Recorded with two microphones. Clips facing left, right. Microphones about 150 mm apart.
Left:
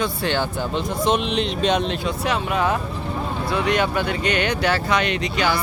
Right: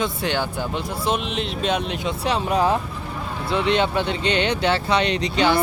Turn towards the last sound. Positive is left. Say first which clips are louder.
# right 2 dB
turn(degrees=-30)  # may be behind; listen again after turning